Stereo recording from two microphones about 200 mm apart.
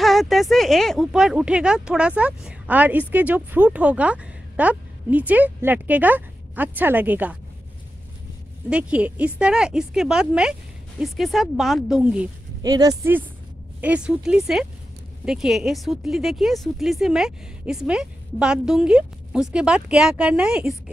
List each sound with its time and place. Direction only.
0.0 s speech: centre (ahead or behind)
8.6 s speech: 5° right (ahead or behind)
12.6 s speech: 20° right (ahead or behind)